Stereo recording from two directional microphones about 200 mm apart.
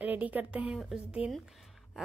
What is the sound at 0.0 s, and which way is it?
A woman's voice, 10° right (ahead or behind).